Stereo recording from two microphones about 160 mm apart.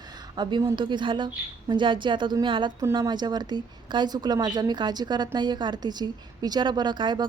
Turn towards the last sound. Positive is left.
turn(degrees=-30)  # may be behind; listen again after turning